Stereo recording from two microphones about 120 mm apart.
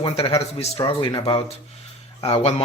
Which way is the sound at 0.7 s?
40° left (ahead or behind).